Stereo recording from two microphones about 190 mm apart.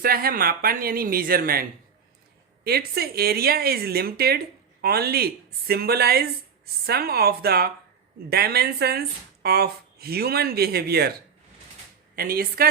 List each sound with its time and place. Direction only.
0.0 s speech: 50° right (ahead or behind)
2.6 s speech: 55° right (ahead or behind)
12.1 s speech: 50° right (ahead or behind)